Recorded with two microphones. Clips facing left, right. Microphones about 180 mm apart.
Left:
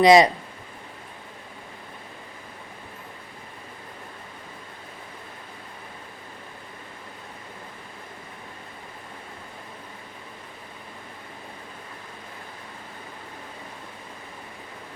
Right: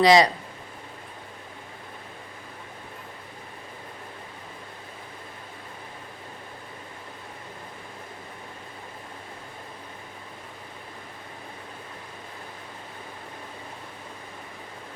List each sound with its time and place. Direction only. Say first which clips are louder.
0.0 s speech: left 3 dB; 20° left (ahead or behind)